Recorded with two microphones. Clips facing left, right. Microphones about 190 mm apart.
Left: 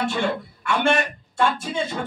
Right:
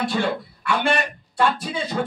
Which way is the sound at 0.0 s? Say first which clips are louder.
Right 1 dB; 35° right (ahead or behind).